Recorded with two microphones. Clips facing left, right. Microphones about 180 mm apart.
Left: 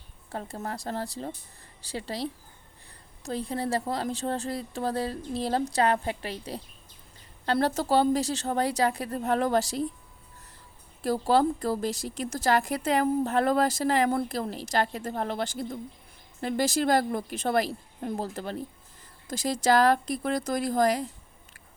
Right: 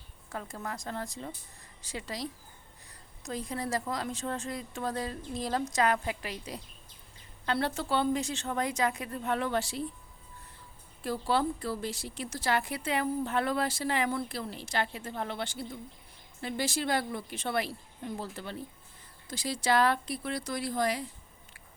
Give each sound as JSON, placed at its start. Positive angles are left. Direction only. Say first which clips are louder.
{"t": 0.3, "sound": "a woman's voice", "louder": "left 4 dB", "side_deg": 30}
{"t": 11.0, "sound": "a woman's voice", "louder": "left 6 dB", "side_deg": 40}